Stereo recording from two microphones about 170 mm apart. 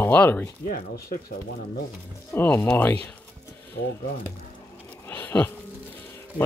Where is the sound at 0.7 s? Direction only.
60° left (ahead or behind).